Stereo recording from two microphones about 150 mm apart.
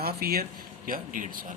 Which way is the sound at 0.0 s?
90° right.